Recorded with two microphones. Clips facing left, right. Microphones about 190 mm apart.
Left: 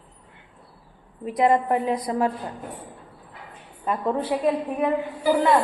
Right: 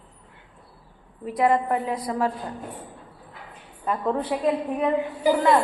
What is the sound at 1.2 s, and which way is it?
A woman's voice, 20° left (ahead or behind).